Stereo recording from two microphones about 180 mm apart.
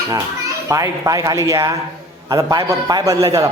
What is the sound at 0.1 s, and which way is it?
A child's voice, 20° right (ahead or behind).